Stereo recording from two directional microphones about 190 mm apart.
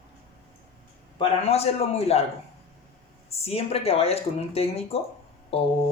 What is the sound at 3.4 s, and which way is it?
Speech, 30° left (ahead or behind).